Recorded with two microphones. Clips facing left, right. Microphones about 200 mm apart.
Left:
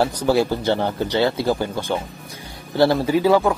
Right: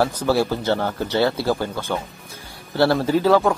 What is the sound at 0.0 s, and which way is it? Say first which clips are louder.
Speech: left 1 dB; 15° left (ahead or behind).